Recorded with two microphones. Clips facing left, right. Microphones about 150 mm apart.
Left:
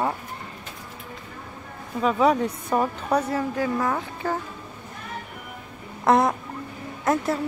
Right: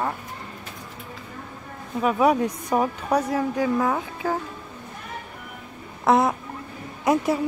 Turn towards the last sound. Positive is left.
turn(degrees=-10)  # may be behind; listen again after turning